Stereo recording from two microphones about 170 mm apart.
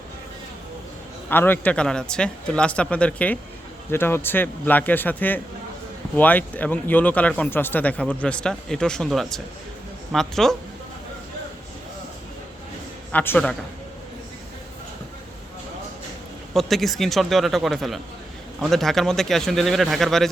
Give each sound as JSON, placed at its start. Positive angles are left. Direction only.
{"t": 1.3, "sound": "speech", "side_deg": 10}
{"t": 13.1, "sound": "speech", "side_deg": 10}
{"t": 16.6, "sound": "speech", "side_deg": 0}